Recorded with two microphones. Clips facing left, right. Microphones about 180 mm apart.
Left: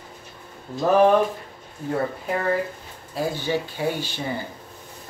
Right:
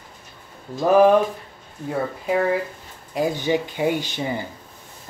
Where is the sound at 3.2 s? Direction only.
15° right (ahead or behind).